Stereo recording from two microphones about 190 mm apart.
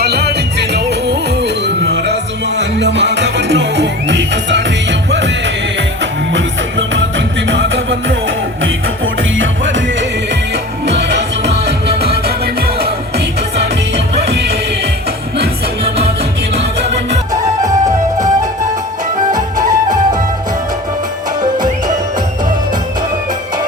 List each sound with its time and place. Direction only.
0.0 s music: 60° right (ahead or behind)
6.3 s music: 75° right (ahead or behind)
9.4 s music: 80° right
10.8 s music: 65° right (ahead or behind)
17.6 s music: 20° right (ahead or behind)
19.3 s music: 20° right (ahead or behind)